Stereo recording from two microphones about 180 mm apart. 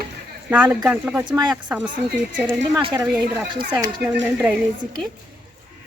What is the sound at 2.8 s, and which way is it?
Speech, 20° right (ahead or behind).